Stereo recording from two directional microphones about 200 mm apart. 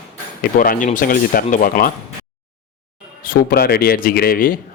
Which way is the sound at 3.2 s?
45° left (ahead or behind).